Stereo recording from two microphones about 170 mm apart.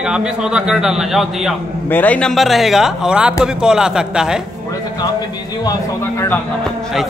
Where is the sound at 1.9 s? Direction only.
10° left (ahead or behind).